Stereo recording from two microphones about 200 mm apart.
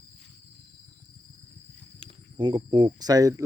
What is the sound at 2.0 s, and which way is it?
Speech, 25° right (ahead or behind).